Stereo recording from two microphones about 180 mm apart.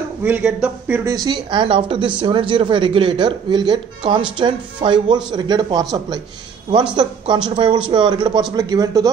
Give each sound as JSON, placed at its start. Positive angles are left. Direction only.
{"t": 0.2, "sound": "speech", "side_deg": -10}
{"t": 1.1, "sound": "speech", "side_deg": -25}
{"t": 7.4, "sound": "speech", "side_deg": -30}